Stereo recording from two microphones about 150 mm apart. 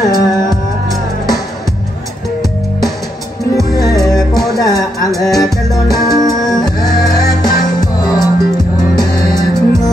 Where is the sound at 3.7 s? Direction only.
25° left (ahead or behind).